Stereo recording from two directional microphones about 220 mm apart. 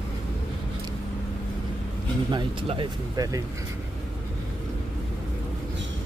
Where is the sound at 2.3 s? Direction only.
20° right (ahead or behind).